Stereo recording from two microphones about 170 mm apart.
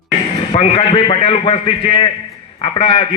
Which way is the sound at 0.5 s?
35° left (ahead or behind).